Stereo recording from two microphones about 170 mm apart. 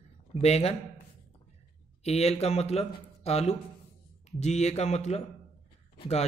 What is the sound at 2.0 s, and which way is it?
A man's voice, 40° left (ahead or behind).